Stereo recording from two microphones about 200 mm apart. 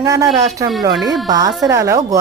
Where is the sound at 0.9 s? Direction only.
Centre (ahead or behind).